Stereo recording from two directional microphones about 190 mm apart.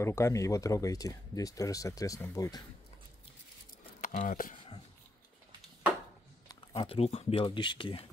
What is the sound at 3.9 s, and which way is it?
Speech, 45° left (ahead or behind).